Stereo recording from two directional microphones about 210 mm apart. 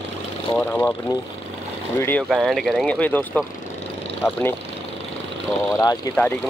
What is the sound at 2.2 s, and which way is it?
Speech, centre (ahead or behind).